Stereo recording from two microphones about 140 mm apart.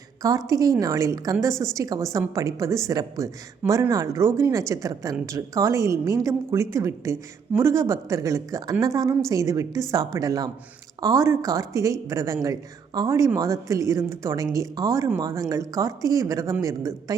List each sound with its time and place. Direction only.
0.2 s a woman's voice: 25° right (ahead or behind)